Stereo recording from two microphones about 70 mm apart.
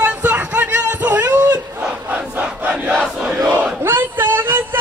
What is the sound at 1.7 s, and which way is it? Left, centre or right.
Crowd, right.